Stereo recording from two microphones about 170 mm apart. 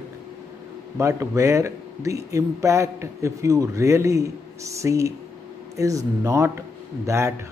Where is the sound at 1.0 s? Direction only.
15° right (ahead or behind).